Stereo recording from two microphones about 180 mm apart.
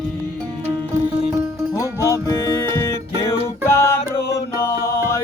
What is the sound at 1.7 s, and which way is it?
Music, 15° left (ahead or behind).